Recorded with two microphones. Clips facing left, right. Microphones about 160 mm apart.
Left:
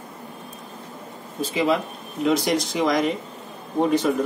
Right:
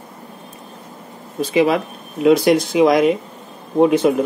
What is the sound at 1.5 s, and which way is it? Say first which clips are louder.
Speech: right 6 dB; 75° right (ahead or behind).